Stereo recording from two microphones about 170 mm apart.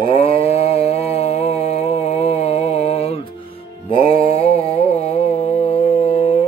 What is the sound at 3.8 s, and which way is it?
Mantra, 35° left (ahead or behind).